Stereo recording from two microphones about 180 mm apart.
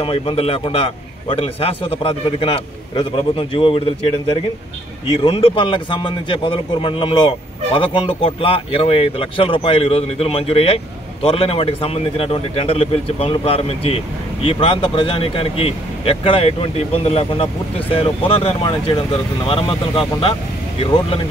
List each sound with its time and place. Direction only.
0.0 s speech: 30° left (ahead or behind)
5.2 s speech: 30° left (ahead or behind)